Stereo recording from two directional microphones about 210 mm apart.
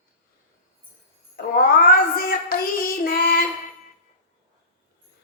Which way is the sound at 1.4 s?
45° left (ahead or behind).